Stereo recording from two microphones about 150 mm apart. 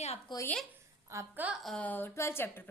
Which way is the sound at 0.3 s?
30° left (ahead or behind).